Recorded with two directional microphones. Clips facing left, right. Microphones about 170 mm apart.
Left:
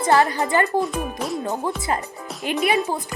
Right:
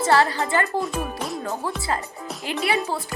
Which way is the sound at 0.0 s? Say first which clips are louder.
Left 1 dB; 20° left (ahead or behind).